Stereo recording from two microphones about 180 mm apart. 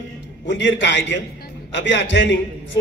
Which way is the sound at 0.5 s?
80° left.